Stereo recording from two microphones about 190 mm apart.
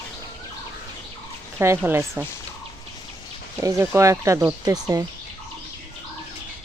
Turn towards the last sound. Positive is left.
turn(degrees=-20)  # may be behind; listen again after turning